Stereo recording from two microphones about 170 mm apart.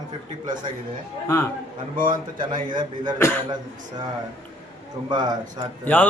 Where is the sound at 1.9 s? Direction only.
55° right (ahead or behind).